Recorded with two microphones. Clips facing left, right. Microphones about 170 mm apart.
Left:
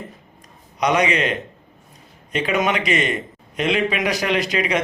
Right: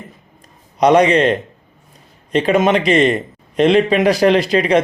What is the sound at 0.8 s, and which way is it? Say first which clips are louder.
Speech: right 8 dB; 35° right (ahead or behind).